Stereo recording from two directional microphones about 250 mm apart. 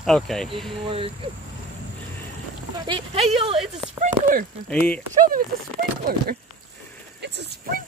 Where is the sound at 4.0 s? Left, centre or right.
Right.